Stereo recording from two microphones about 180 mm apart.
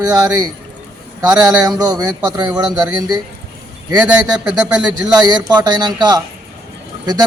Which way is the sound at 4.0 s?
5° right (ahead or behind).